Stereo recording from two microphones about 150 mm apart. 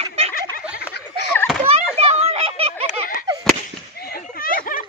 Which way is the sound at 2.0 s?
45° right (ahead or behind).